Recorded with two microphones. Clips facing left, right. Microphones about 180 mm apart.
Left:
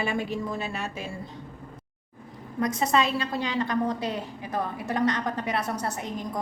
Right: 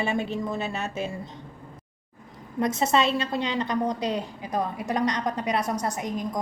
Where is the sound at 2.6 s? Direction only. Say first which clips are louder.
Right 1 dB; 25° right (ahead or behind).